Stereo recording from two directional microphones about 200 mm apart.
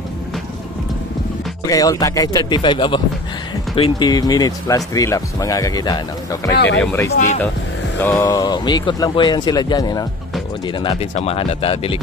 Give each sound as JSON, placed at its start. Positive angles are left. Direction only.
{"t": 1.7, "sound": "speech", "side_deg": 20}
{"t": 6.5, "sound": "speech", "side_deg": 60}
{"t": 6.8, "sound": "speech", "side_deg": 10}
{"t": 7.1, "sound": "speech", "side_deg": 40}
{"t": 8.0, "sound": "speech", "side_deg": 15}